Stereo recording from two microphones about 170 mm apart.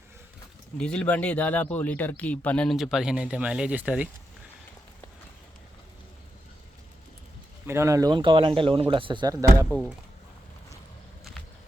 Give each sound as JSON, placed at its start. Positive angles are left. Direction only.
{"t": 0.8, "sound": "speech", "side_deg": 5}
{"t": 7.7, "sound": "speech", "side_deg": -15}
{"t": 9.6, "sound": "speech", "side_deg": 0}